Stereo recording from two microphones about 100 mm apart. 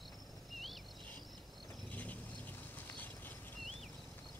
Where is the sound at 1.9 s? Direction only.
15° left (ahead or behind).